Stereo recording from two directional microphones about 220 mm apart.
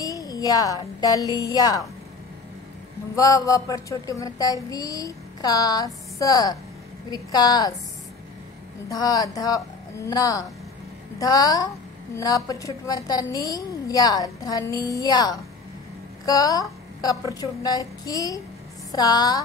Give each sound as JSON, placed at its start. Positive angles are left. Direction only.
{"t": 0.0, "sound": "speech", "side_deg": 15}
{"t": 3.2, "sound": "a woman's voice", "side_deg": 15}
{"t": 8.8, "sound": "a woman's voice", "side_deg": 15}